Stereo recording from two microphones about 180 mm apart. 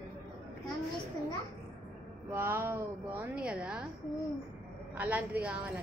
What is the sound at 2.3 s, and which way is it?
A woman's voice, 10° right (ahead or behind).